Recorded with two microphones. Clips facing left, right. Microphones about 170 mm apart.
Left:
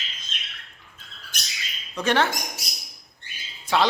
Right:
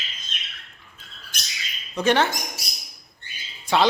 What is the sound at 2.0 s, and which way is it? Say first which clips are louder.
Speech: right 2 dB; centre (ahead or behind).